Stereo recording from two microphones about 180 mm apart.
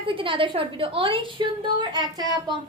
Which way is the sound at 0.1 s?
30° right (ahead or behind).